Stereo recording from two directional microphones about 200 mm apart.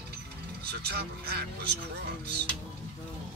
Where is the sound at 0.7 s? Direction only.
55° right (ahead or behind).